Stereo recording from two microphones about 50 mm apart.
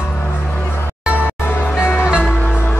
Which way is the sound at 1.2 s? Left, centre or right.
Left.